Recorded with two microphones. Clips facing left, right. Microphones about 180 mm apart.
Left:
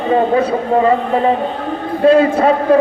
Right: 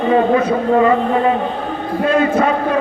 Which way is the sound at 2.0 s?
30° left (ahead or behind).